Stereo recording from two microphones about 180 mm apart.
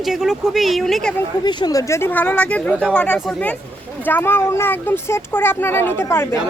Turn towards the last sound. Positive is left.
turn(degrees=15)  # may be behind; listen again after turning